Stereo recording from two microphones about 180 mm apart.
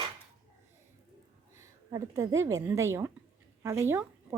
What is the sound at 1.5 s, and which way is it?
Speech, 20° right (ahead or behind).